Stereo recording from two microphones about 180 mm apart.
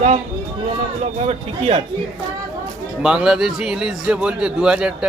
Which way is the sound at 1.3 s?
35° right (ahead or behind).